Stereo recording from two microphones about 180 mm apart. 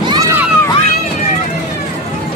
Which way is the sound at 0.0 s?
20° right (ahead or behind).